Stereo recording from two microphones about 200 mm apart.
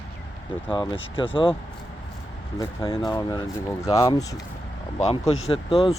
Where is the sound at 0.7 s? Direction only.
25° left (ahead or behind).